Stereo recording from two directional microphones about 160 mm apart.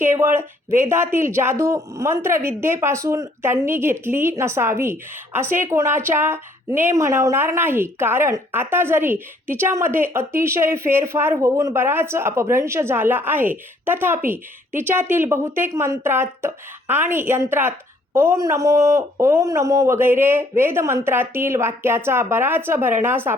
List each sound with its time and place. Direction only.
0.0 s speech: 15° right (ahead or behind)